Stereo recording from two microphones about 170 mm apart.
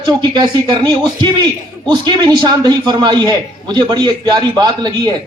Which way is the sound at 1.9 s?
25° right (ahead or behind).